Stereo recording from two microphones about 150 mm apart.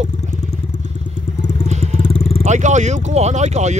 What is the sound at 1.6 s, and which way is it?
Vehicle, 50° right (ahead or behind).